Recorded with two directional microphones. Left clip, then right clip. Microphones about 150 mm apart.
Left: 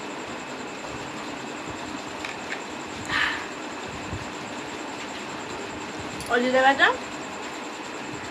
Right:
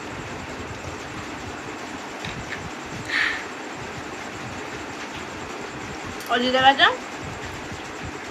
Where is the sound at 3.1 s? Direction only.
30° left (ahead or behind).